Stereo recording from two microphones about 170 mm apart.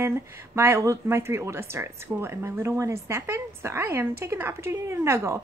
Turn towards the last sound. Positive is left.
turn(degrees=-15)  # may be behind; listen again after turning